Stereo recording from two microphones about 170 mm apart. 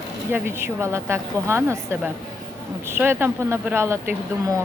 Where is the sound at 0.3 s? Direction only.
10° right (ahead or behind).